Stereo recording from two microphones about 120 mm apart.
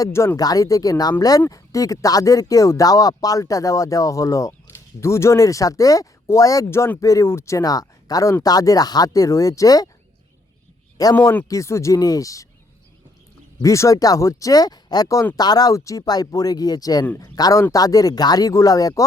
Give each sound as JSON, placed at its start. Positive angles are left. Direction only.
{"t": 0.0, "sound": "speech", "side_deg": 25}
{"t": 10.9, "sound": "speech", "side_deg": 30}
{"t": 13.6, "sound": "speech", "side_deg": 25}